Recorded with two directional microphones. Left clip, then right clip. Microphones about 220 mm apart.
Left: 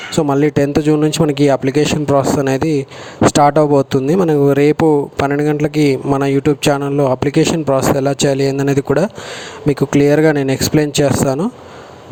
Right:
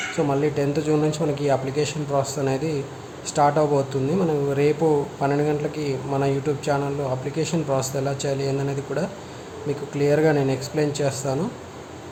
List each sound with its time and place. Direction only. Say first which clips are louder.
0.3 s a man's voice: left 10 dB; 45° left (ahead or behind)